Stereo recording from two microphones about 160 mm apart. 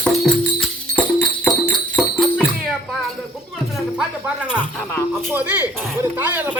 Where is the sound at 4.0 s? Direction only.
5° right (ahead or behind).